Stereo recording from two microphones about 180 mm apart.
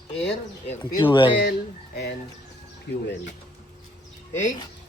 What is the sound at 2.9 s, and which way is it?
Speech, 70° left (ahead or behind).